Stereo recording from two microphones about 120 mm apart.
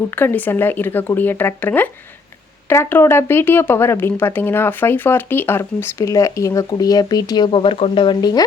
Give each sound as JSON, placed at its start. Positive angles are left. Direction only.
{"t": 0.2, "sound": "speech", "side_deg": 15}